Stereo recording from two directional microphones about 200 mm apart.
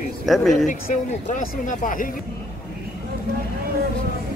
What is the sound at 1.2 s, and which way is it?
Speech, 40° left (ahead or behind).